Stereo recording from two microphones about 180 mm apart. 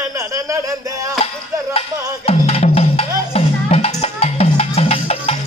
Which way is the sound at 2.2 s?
35° left (ahead or behind).